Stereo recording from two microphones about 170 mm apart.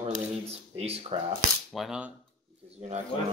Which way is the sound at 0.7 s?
35° right (ahead or behind).